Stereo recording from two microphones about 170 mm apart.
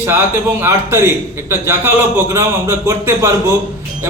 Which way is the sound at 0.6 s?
15° right (ahead or behind).